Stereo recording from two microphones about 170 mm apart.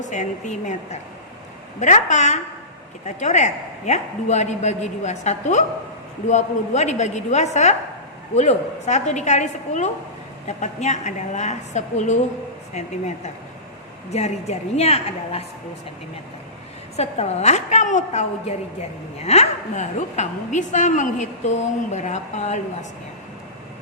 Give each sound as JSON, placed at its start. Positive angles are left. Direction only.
{"t": 0.0, "sound": "a woman's voice", "side_deg": 45}
{"t": 17.0, "sound": "a woman's voice", "side_deg": 40}